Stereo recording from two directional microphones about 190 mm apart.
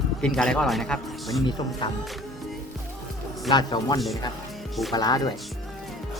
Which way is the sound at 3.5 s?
20° left (ahead or behind).